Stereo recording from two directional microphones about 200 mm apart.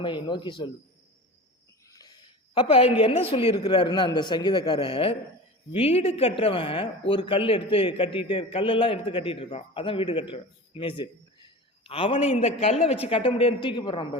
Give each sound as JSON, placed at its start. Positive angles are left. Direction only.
{"t": 0.0, "sound": "a man's voice", "side_deg": 25}
{"t": 1.9, "sound": "a sound", "side_deg": 20}
{"t": 3.0, "sound": "a man's voice", "side_deg": 30}